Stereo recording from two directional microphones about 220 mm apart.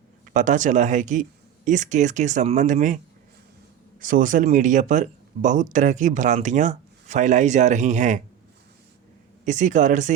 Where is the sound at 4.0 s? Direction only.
40° right (ahead or behind).